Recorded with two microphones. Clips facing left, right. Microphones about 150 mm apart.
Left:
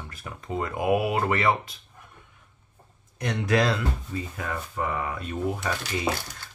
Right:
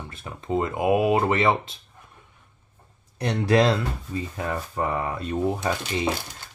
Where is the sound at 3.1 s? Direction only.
30° right (ahead or behind).